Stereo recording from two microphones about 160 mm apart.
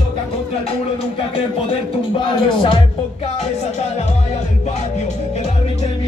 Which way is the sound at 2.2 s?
30° left (ahead or behind).